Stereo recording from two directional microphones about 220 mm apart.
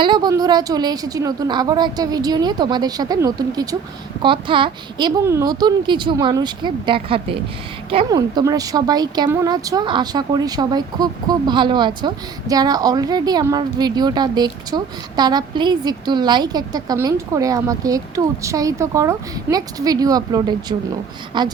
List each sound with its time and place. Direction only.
0.0 s a woman's voice: 20° right (ahead or behind)